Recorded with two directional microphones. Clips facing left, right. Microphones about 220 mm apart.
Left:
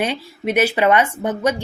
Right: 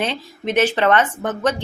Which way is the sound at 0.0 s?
10° left (ahead or behind).